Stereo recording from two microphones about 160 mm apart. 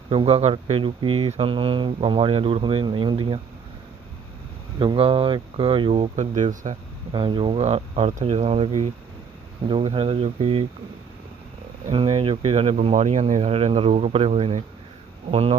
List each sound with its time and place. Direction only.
0.1 s speech: 35° right (ahead or behind)
4.8 s speech: 30° right (ahead or behind); by 6.7 s 50° right (ahead or behind)
7.1 s speech: 30° right (ahead or behind)
11.9 s speech: 35° right (ahead or behind)